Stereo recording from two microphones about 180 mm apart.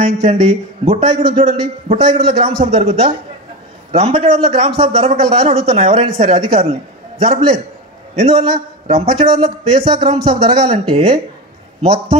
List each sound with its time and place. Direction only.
0.0 s a man's voice: 35° right (ahead or behind)